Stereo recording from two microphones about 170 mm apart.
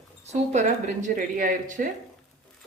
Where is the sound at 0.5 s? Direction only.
45° right (ahead or behind).